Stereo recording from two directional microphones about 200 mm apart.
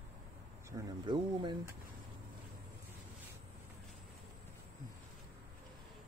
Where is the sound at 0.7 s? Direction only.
20° right (ahead or behind).